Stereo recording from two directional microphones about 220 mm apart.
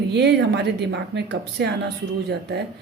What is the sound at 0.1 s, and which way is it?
Speech, 50° right (ahead or behind).